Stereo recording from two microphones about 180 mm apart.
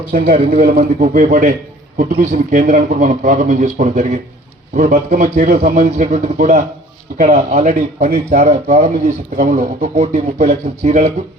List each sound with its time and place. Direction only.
0.7 s a man's voice: 45° right (ahead or behind)